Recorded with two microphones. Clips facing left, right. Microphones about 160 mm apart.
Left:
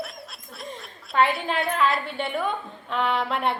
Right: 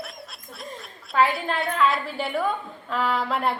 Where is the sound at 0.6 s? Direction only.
Centre (ahead or behind).